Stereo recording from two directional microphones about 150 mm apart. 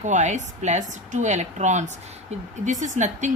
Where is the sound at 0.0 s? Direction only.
50° right (ahead or behind).